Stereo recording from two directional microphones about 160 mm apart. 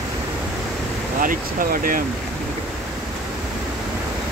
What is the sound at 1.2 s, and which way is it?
Speech, 60° right (ahead or behind).